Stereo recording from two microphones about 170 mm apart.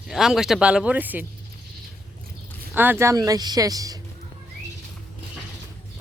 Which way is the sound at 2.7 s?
10° right (ahead or behind).